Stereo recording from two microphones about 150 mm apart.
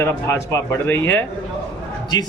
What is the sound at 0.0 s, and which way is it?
Speech, 15° left (ahead or behind).